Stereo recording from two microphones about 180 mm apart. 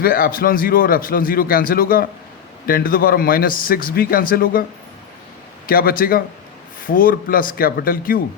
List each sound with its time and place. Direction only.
0.0 s speech: 55° left (ahead or behind)
5.6 s speech: 55° left (ahead or behind)